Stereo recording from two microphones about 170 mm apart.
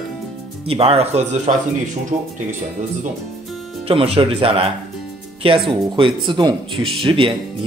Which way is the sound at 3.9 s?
35° right (ahead or behind).